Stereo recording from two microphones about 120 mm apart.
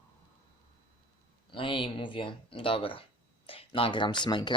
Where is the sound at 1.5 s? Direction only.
45° left (ahead or behind).